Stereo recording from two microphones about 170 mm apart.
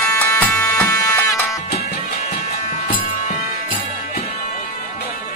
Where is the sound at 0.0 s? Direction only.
10° left (ahead or behind).